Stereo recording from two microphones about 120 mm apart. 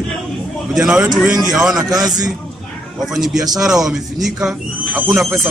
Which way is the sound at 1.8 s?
30° right (ahead or behind).